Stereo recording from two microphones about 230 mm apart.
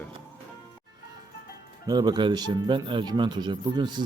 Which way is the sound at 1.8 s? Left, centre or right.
Centre.